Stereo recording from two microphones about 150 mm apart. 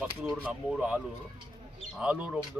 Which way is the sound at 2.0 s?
5° right (ahead or behind).